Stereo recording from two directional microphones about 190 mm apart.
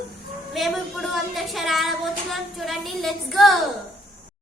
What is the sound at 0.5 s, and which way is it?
A woman's voice, centre (ahead or behind).